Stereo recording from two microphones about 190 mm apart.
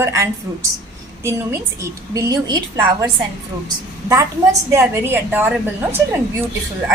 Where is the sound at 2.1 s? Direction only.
20° right (ahead or behind).